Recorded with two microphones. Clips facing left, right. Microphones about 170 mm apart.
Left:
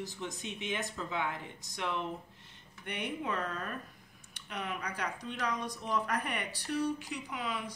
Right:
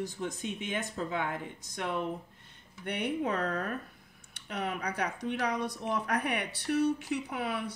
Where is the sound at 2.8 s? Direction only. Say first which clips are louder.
Right 5 dB; 65° right (ahead or behind).